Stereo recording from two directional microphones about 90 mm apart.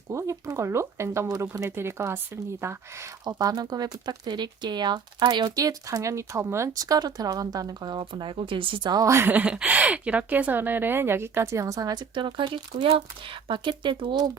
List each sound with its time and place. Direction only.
0.1 s speech: 30° right (ahead or behind)
3.2 s speech: 45° right (ahead or behind); by 8.9 s 75° right (ahead or behind)
8.9 s speech: 45° right (ahead or behind)
9.1 s a woman's voice: 20° right (ahead or behind); by 12.0 s 45° right (ahead or behind)
12.1 s speech: 65° right (ahead or behind)